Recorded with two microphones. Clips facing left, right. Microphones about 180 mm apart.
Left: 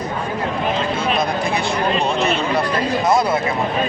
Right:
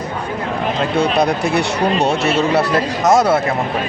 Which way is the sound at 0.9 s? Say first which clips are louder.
Right 5 dB; 70° right (ahead or behind).